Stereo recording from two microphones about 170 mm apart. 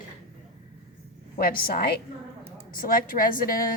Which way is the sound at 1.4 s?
60° left (ahead or behind).